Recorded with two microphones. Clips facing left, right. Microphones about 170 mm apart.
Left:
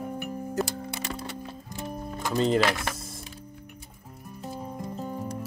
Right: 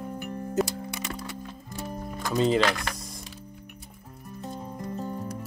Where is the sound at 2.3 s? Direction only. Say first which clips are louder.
Right 1 dB; centre (ahead or behind).